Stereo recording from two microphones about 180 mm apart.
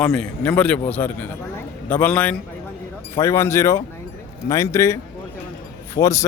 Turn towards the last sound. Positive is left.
turn(degrees=15)  # may be behind; listen again after turning